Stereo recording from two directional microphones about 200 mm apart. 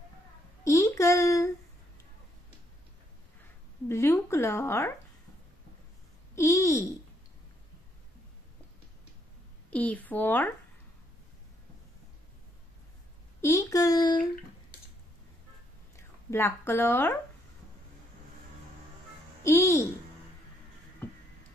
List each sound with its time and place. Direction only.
0.7 s a sound: 15° left (ahead or behind)
3.9 s a sound: 15° left (ahead or behind)
6.3 s babbling: 15° left (ahead or behind)
9.7 s speech: 5° left (ahead or behind)
13.4 s a child's voice: 15° left (ahead or behind)
16.3 s speech: 10° left (ahead or behind)
19.4 s speech: 15° left (ahead or behind)